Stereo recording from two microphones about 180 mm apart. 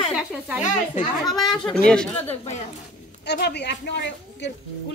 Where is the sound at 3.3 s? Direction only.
65° left (ahead or behind).